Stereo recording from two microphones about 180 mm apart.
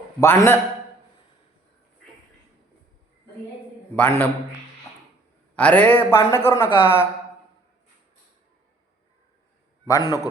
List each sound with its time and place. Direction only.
0.2 s a man's voice: 15° left (ahead or behind)
3.9 s a man's voice: 10° left (ahead or behind)
5.5 s a man's voice: 10° left (ahead or behind)
9.8 s a man's voice: 20° left (ahead or behind)